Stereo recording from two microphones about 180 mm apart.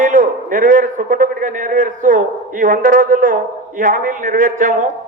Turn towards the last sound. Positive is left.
turn(degrees=-50)  # may be behind; listen again after turning